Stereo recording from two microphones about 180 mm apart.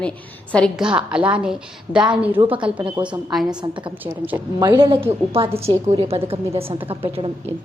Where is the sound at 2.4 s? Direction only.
30° right (ahead or behind).